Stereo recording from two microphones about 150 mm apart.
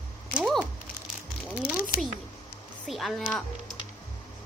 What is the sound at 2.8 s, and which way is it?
Speech, centre (ahead or behind).